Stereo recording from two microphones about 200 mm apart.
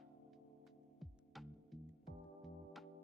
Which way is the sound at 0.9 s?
Centre (ahead or behind).